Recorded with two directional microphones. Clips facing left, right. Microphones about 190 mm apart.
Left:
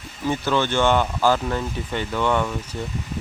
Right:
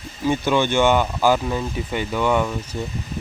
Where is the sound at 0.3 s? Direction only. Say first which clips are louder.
Right 3 dB; 15° right (ahead or behind).